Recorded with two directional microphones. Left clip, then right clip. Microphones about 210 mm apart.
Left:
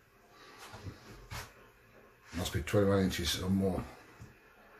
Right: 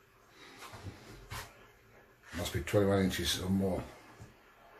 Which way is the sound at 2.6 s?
10° left (ahead or behind).